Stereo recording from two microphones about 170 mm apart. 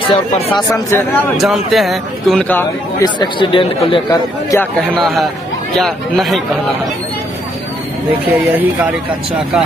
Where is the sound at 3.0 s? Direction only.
30° left (ahead or behind).